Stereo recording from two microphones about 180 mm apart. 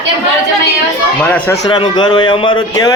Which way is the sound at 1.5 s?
25° left (ahead or behind).